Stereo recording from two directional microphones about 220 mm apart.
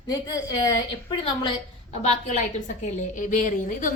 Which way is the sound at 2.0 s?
30° left (ahead or behind).